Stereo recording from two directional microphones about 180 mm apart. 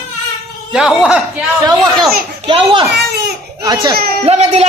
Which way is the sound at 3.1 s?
65° right (ahead or behind).